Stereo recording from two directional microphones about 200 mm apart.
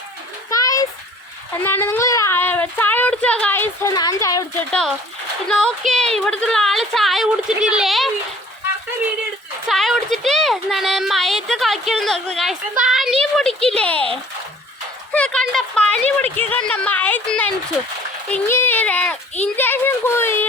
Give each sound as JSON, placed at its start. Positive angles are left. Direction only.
{"t": 0.5, "sound": "a sound", "side_deg": 15}
{"t": 4.7, "sound": "speech", "side_deg": 0}
{"t": 9.6, "sound": "a child's voice", "side_deg": 0}
{"t": 15.1, "sound": "a child's voice", "side_deg": 5}